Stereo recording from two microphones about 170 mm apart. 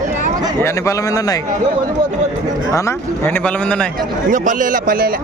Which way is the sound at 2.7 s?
15° left (ahead or behind).